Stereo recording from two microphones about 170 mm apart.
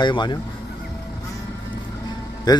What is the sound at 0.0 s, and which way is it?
Speech, 25° left (ahead or behind).